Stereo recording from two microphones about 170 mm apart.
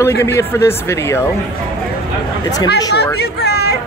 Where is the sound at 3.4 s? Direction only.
70° left (ahead or behind).